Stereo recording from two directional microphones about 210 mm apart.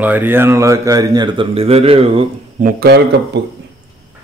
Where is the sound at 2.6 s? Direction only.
50° right (ahead or behind).